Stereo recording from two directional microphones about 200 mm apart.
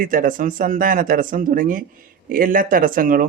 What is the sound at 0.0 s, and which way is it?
Speech, 40° right (ahead or behind).